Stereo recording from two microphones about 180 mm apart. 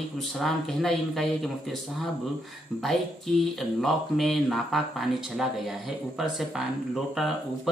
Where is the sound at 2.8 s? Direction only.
Centre (ahead or behind).